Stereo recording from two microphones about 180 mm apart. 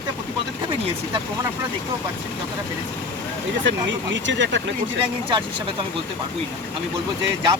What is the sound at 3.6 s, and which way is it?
Speech, 90° right.